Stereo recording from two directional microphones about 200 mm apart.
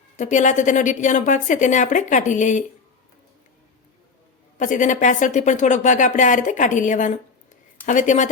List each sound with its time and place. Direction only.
0.2 s speech: 40° left (ahead or behind)
4.5 s speech: 40° left (ahead or behind)